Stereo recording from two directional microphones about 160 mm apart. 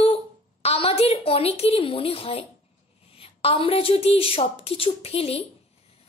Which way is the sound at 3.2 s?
35° left (ahead or behind).